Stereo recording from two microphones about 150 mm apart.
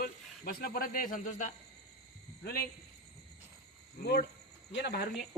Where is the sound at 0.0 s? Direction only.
75° left (ahead or behind); by 1.5 s 60° left (ahead or behind).